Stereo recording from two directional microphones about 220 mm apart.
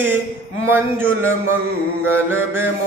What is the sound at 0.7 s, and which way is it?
Mantra, 10° right (ahead or behind).